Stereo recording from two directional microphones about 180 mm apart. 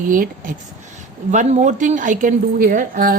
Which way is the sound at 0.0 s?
50° right (ahead or behind).